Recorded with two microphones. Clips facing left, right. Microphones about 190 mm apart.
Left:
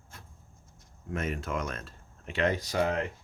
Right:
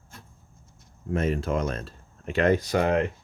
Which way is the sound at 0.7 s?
30° right (ahead or behind).